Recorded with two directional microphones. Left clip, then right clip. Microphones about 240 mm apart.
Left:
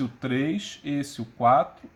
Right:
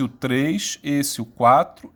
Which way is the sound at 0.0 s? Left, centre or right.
Right.